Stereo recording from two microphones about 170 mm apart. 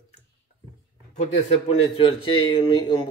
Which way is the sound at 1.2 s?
35° left (ahead or behind).